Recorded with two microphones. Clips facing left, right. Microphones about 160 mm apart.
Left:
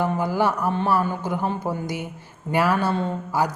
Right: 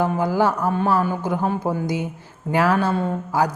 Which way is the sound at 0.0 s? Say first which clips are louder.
Right 2 dB; 15° right (ahead or behind).